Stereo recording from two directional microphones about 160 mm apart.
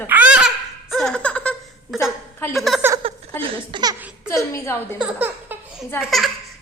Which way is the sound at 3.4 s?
30° right (ahead or behind).